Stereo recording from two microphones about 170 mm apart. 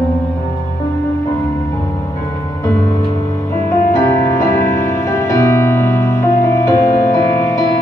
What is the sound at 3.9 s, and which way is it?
Music, 15° left (ahead or behind).